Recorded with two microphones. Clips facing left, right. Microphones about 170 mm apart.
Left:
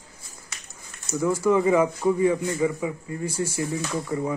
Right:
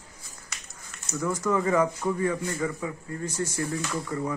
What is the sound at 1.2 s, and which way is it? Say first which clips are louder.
A man's voice: left 5 dB; 10° left (ahead or behind).